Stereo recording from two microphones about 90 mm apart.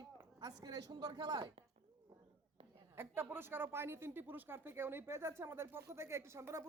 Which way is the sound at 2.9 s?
25° right (ahead or behind).